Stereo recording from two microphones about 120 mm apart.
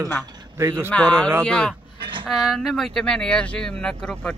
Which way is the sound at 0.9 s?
10° left (ahead or behind).